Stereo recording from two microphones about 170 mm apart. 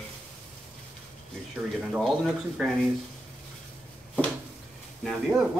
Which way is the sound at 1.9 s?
Centre (ahead or behind).